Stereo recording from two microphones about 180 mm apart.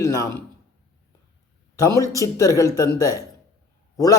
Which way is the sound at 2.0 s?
20° left (ahead or behind).